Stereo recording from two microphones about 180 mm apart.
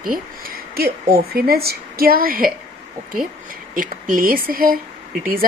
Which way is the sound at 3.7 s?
50° right (ahead or behind).